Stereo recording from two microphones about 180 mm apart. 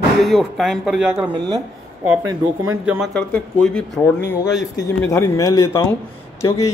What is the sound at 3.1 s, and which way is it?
Speech, 5° left (ahead or behind).